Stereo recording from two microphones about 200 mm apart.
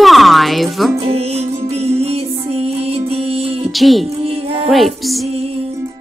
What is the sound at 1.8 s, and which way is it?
Music, 30° right (ahead or behind).